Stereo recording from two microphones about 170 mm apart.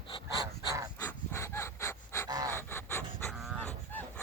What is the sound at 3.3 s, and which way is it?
Cattle, 5° left (ahead or behind).